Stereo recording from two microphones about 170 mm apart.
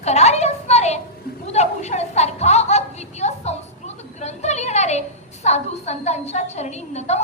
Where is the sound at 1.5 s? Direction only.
40° left (ahead or behind).